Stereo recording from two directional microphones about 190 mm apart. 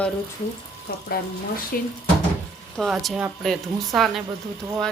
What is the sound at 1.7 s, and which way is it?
Speech, 50° left (ahead or behind).